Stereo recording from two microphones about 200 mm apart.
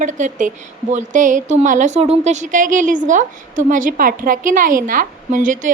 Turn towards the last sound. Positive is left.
turn(degrees=-40)  # may be behind; listen again after turning